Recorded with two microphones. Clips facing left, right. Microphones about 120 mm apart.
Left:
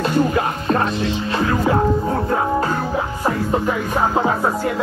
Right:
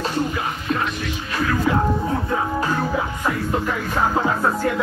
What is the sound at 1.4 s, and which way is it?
Speech, 30° left (ahead or behind).